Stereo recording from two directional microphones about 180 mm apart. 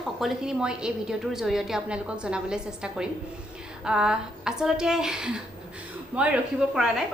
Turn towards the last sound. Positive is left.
turn(degrees=-5)  # may be behind; listen again after turning